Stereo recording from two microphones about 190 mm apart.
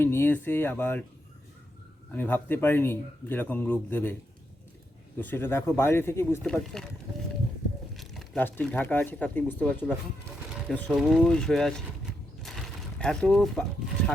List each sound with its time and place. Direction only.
0.0 s a man's voice: 10° left (ahead or behind)
2.1 s a man's voice: 10° left (ahead or behind)
5.2 s a man's voice: 10° left (ahead or behind)
6.4 s speech: 5° left (ahead or behind)
7.9 s speech: centre (ahead or behind)
12.4 s a sound: centre (ahead or behind)